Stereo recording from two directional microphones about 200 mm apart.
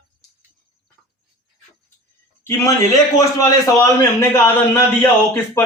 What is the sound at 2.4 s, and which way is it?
A man's voice, 15° left (ahead or behind).